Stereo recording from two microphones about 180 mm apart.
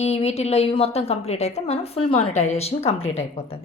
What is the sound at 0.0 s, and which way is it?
A woman's voice, 35° left (ahead or behind).